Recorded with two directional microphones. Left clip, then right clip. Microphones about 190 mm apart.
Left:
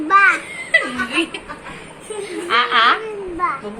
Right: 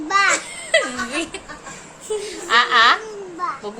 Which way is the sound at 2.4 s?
60° right (ahead or behind).